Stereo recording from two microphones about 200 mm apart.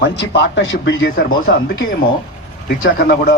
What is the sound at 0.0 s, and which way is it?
Speech, 60° left (ahead or behind).